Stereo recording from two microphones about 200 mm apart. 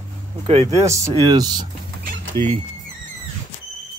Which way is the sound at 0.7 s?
15° right (ahead or behind).